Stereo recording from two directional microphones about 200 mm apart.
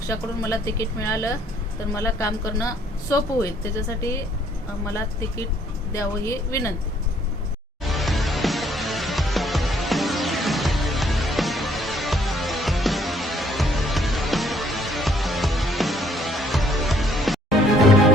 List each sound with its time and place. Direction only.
0.1 s speech: 15° left (ahead or behind)
7.9 s music: centre (ahead or behind)